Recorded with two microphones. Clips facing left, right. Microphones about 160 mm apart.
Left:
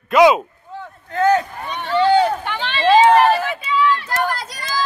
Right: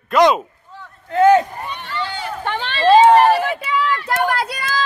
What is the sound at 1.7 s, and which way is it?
Boat, 60° left (ahead or behind).